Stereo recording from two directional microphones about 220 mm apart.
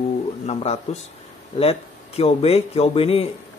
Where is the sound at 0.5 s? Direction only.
30° left (ahead or behind).